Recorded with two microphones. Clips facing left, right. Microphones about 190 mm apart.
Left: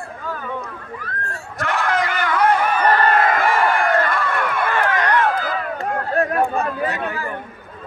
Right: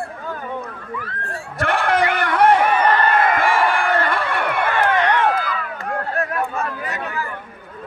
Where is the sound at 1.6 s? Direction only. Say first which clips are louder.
Right 3 dB; 60° right (ahead or behind).